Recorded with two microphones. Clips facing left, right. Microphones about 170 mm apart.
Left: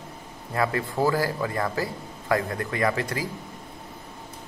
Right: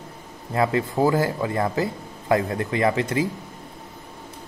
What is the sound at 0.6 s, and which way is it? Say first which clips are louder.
Speech: right 4 dB; 20° right (ahead or behind).